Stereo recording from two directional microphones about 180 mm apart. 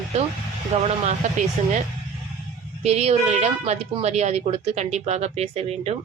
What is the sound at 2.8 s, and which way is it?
Speech, 35° right (ahead or behind).